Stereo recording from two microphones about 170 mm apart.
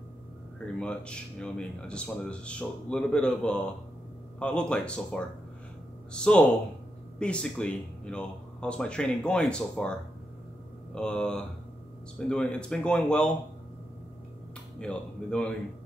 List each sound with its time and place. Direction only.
0.7 s speech: 5° left (ahead or behind)
11.0 s speech: 5° left (ahead or behind)
14.8 s speech: 5° left (ahead or behind)